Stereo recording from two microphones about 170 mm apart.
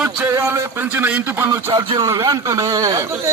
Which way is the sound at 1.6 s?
30° right (ahead or behind).